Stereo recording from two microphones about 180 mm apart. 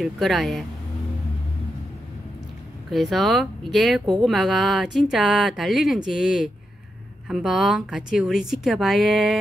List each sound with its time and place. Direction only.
0.0 s speech: centre (ahead or behind)
2.9 s speech: centre (ahead or behind)
4.0 s speech: 25° right (ahead or behind)
4.3 s speech: centre (ahead or behind)